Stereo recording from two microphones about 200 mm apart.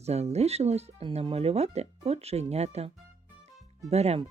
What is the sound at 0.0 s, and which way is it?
Speech, 30° right (ahead or behind).